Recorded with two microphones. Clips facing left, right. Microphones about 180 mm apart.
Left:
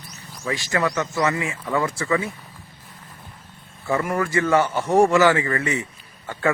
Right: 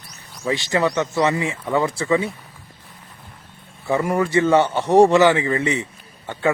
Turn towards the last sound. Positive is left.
turn(degrees=-20)  # may be behind; listen again after turning